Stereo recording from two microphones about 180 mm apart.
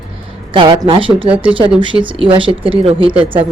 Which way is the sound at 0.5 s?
25° right (ahead or behind).